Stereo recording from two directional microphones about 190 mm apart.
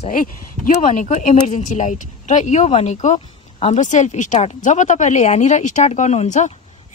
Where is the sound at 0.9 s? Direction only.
40° left (ahead or behind).